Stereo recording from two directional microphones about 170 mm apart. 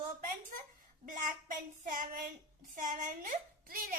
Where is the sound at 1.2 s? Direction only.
50° right (ahead or behind).